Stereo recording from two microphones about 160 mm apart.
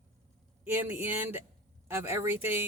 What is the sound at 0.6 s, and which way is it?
Speech, 15° right (ahead or behind).